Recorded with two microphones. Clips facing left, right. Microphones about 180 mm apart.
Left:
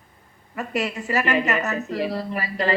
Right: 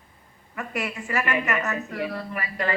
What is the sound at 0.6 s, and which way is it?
Speech, 25° left (ahead or behind).